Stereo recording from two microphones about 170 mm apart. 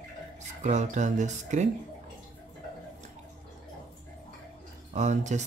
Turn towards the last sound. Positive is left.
turn(degrees=-45)  # may be behind; listen again after turning